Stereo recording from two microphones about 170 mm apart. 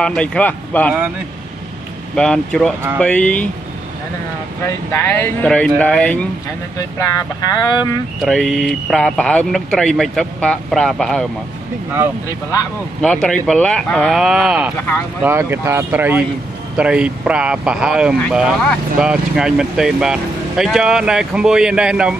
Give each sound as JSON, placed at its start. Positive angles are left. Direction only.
{"t": 0.0, "sound": "speech", "side_deg": 5}
{"t": 2.1, "sound": "speech", "side_deg": 5}
{"t": 4.6, "sound": "speech", "side_deg": 15}
{"t": 6.8, "sound": "speech", "side_deg": 20}
{"t": 8.2, "sound": "speech", "side_deg": 0}
{"t": 13.0, "sound": "speech", "side_deg": 5}